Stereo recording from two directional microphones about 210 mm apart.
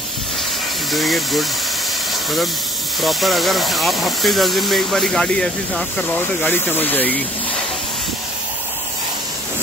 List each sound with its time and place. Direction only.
0.9 s speech: centre (ahead or behind)
3.0 s speech: centre (ahead or behind)